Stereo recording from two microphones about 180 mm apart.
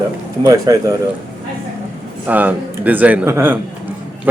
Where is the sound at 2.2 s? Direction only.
10° right (ahead or behind).